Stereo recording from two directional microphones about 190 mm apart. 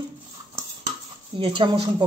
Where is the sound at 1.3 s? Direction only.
25° right (ahead or behind).